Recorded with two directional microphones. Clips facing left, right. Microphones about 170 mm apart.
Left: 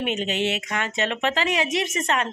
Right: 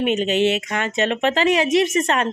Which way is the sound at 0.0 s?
20° right (ahead or behind).